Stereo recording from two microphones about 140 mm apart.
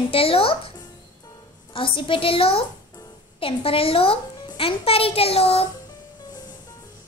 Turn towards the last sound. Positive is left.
turn(degrees=25)  # may be behind; listen again after turning